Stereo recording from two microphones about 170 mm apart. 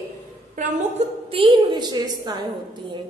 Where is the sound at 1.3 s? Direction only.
30° right (ahead or behind).